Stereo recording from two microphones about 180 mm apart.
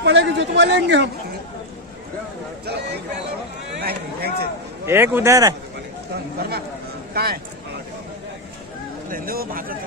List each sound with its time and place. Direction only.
0.0 s a man's voice: 75° right (ahead or behind)
3.8 s speech: 60° right (ahead or behind)
4.8 s a man's voice: 10° right (ahead or behind)
7.2 s speech: 60° right (ahead or behind)
9.1 s speech: 55° right (ahead or behind)